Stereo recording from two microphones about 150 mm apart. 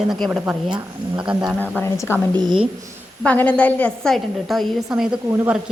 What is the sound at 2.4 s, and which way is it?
Speech, 30° right (ahead or behind).